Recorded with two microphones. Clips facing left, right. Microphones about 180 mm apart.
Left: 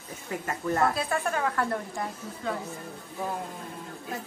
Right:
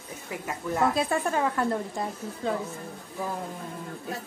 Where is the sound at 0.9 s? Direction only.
25° right (ahead or behind).